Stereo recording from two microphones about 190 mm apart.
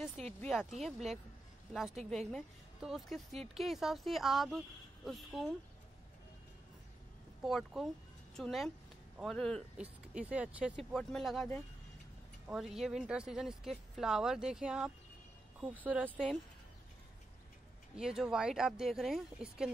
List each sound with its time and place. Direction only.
0.4 s speech: centre (ahead or behind)
7.4 s speech: centre (ahead or behind)
12.4 s speech: centre (ahead or behind)
17.9 s speech: centre (ahead or behind)